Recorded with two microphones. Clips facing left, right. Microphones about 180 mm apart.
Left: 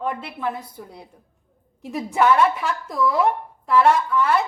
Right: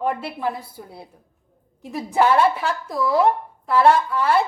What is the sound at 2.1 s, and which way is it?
Speech, 30° right (ahead or behind).